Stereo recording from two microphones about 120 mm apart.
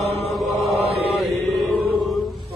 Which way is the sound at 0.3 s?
Centre (ahead or behind).